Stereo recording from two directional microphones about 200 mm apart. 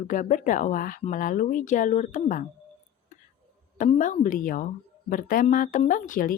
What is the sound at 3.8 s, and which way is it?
A woman's voice, 40° left (ahead or behind).